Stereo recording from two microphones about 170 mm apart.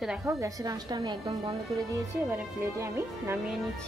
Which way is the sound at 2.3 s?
15° right (ahead or behind).